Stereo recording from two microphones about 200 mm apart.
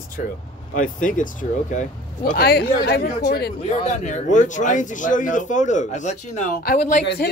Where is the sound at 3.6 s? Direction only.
35° left (ahead or behind).